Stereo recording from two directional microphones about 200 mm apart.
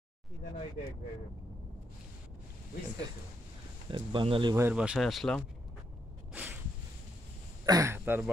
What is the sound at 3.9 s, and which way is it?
Speech, 25° right (ahead or behind).